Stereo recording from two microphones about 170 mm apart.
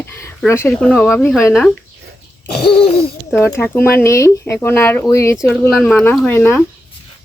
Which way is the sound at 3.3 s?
15° left (ahead or behind).